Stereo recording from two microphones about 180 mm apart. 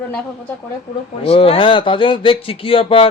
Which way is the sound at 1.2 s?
30° left (ahead or behind).